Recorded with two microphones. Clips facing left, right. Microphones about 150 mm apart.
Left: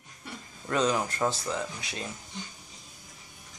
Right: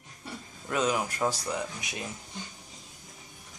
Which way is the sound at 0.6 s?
10° right (ahead or behind).